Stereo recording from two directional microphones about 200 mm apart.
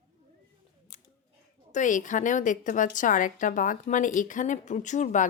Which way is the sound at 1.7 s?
40° left (ahead or behind).